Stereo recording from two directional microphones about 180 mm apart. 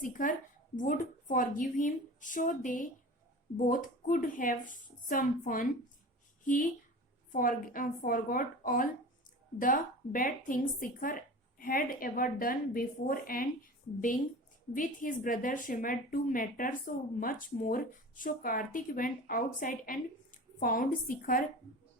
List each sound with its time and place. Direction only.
0.0 s a woman's voice: 50° left (ahead or behind)
14.8 s a woman's voice: 50° left (ahead or behind)